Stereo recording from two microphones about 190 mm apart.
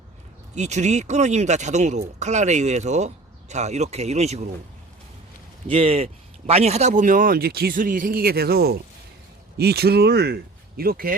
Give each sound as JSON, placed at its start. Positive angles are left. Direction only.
{"t": 0.5, "sound": "speech", "side_deg": -35}
{"t": 5.6, "sound": "speech", "side_deg": -30}